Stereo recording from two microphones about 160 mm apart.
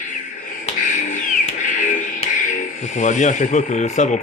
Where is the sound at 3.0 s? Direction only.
50° left (ahead or behind).